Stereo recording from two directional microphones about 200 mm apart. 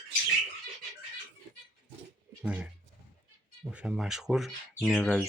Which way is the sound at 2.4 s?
5° right (ahead or behind).